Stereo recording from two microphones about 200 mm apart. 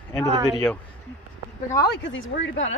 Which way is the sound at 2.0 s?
70° left (ahead or behind).